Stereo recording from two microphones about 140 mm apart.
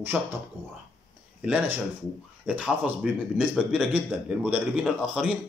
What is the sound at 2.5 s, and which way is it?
A man's voice, 10° right (ahead or behind).